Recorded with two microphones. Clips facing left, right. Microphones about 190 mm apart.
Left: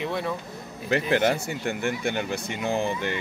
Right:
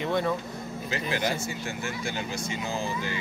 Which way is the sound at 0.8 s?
60° left (ahead or behind).